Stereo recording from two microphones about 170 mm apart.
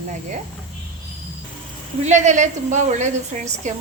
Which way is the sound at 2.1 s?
45° right (ahead or behind).